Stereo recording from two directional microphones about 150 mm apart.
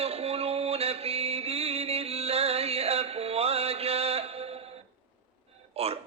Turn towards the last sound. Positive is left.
turn(degrees=-40)  # may be behind; listen again after turning